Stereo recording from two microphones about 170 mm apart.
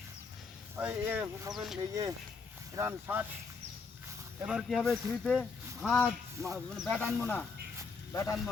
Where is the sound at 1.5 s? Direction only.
Centre (ahead or behind).